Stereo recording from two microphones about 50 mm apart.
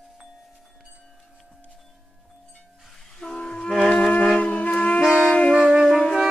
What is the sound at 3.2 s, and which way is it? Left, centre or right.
Music, left.